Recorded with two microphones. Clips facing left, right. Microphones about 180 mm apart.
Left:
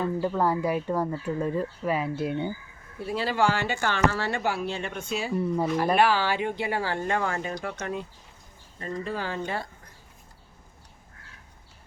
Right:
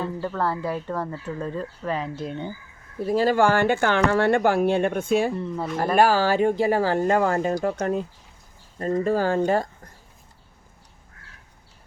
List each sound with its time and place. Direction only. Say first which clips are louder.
0.0 s speech: left 1 dB; 15° left (ahead or behind)
3.1 s speech: right 6 dB; 45° right (ahead or behind)
5.3 s speech: left 2 dB; 15° left (ahead or behind)
5.7 s speech: right 5 dB; 45° right (ahead or behind)